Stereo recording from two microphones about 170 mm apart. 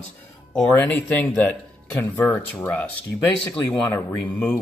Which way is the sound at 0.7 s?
10° left (ahead or behind).